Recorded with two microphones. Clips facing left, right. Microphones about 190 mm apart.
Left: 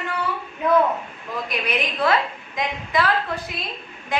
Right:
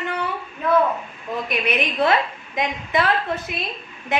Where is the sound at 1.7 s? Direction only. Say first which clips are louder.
Right 1 dB; 25° right (ahead or behind).